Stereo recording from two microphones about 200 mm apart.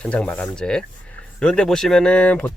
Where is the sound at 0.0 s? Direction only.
5° left (ahead or behind).